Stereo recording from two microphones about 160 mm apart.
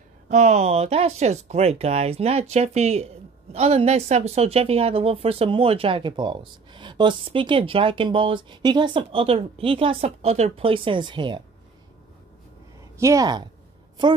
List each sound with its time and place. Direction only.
0.3 s a woman's voice: 50° right (ahead or behind); by 11.4 s 30° right (ahead or behind)
12.9 s speech: 20° right (ahead or behind)